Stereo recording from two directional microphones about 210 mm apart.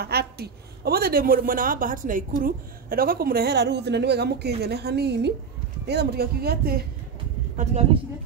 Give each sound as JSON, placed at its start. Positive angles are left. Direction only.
{"t": 0.0, "sound": "a woman's voice", "side_deg": -50}